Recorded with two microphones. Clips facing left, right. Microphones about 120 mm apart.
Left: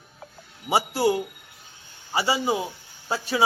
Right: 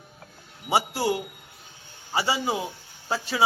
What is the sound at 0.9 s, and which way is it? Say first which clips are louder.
Speech: left 4 dB; 25° left (ahead or behind).